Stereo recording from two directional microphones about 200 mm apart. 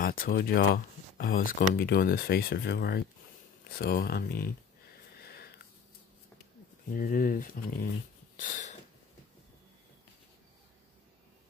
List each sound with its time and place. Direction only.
0.0 s speech: 45° left (ahead or behind)
5.2 s sniff: 50° left (ahead or behind)
6.9 s speech: 45° left (ahead or behind)
8.4 s a sound: 35° left (ahead or behind)